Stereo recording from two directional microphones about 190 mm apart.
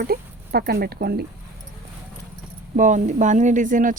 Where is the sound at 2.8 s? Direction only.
40° right (ahead or behind).